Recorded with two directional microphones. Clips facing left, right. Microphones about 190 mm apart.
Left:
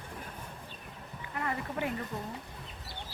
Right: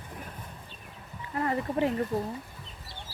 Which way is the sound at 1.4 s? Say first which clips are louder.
Right 7 dB; 30° right (ahead or behind).